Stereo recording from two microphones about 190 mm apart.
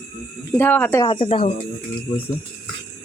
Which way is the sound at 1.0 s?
25° left (ahead or behind).